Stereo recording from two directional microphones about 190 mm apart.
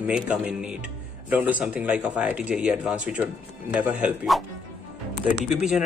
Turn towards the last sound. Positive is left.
turn(degrees=-5)  # may be behind; listen again after turning